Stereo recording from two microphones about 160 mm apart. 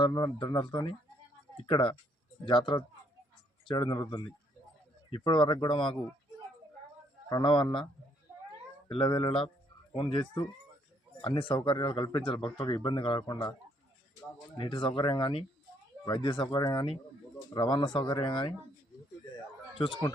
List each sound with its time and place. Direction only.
0.0 s speech: 25° left (ahead or behind)
3.7 s speech: 25° left (ahead or behind)
7.3 s speech: 25° left (ahead or behind)
8.9 s speech: 30° left (ahead or behind)